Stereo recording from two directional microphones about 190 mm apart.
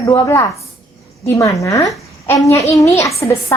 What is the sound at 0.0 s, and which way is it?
A woman's voice, 15° left (ahead or behind).